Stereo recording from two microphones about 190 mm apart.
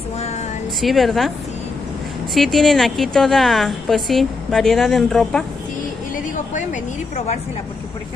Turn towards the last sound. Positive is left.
turn(degrees=40)  # may be behind; listen again after turning